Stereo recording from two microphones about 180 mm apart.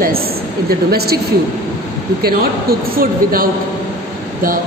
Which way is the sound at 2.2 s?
55° right (ahead or behind).